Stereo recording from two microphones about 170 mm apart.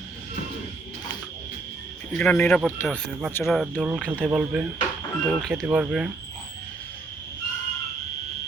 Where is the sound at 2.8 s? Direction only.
Centre (ahead or behind).